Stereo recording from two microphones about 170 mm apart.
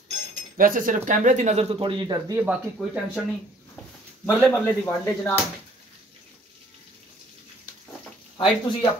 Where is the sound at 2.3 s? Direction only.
10° right (ahead or behind).